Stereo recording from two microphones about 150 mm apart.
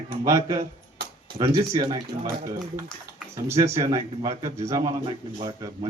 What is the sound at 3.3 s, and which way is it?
A man's voice, 20° right (ahead or behind).